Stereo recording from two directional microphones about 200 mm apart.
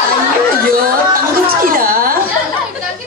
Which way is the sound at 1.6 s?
45° right (ahead or behind).